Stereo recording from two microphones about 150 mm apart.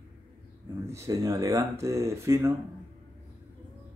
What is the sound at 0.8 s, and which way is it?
Speech, 20° right (ahead or behind).